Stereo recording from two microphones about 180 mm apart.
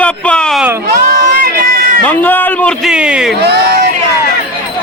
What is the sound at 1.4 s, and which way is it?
Run, 55° right (ahead or behind).